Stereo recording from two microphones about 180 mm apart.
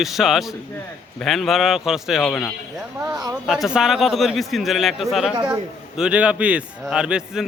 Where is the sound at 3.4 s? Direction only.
Centre (ahead or behind).